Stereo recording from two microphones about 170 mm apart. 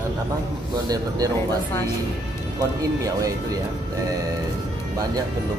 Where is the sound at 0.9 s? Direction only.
20° right (ahead or behind).